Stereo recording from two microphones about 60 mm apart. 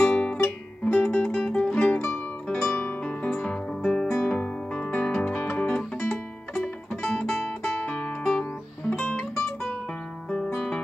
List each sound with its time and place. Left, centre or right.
0.1 s music: centre
6.6 s music: centre
9.3 s guitar: centre